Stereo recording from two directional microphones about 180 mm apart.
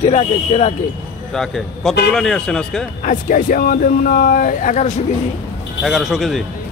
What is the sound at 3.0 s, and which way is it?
Speech, 45° left (ahead or behind).